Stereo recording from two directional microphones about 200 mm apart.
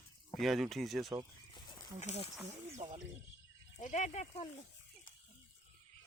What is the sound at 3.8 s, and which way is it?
Speech, 35° left (ahead or behind).